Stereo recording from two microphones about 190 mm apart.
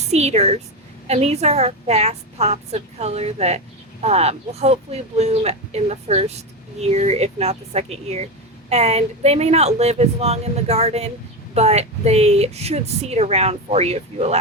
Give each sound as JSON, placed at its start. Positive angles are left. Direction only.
{"t": 0.1, "sound": "speech", "side_deg": -35}